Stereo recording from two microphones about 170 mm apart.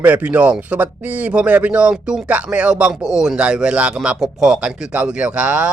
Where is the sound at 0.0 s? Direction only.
10° right (ahead or behind).